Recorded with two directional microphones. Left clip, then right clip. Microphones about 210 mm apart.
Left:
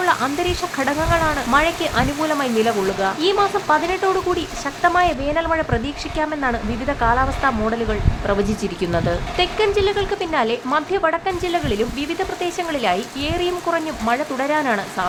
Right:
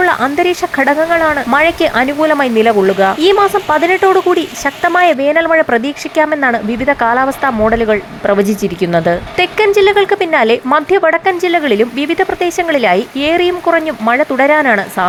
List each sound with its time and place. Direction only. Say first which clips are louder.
0.0 s speech: right 8 dB; 30° right (ahead or behind)